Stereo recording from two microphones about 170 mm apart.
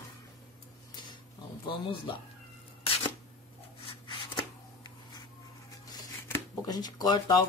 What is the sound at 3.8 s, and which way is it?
Shuffling cards, 25° left (ahead or behind).